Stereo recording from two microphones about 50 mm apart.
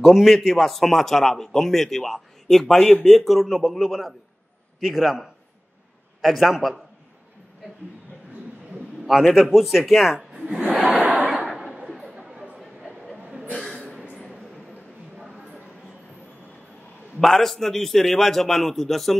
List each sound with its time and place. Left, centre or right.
0.0 s speech: centre
9.3 s speech: centre
10.9 s battle cry: right
11.5 s a sound: centre
11.9 s chatter: centre
12.5 s a sound: centre
17.2 s speech: centre